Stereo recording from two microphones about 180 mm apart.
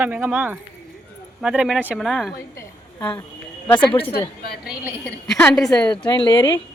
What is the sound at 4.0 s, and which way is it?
Speech, 30° left (ahead or behind).